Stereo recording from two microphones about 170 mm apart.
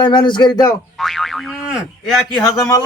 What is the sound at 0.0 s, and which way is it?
Speech, 30° left (ahead or behind).